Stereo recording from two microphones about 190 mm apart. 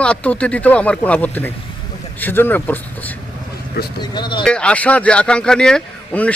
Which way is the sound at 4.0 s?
25° left (ahead or behind).